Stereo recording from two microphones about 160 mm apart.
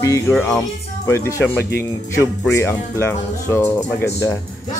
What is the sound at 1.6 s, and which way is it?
Speech, 90° left.